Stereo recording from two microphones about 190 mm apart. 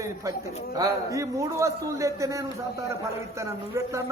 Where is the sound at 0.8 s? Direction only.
15° right (ahead or behind).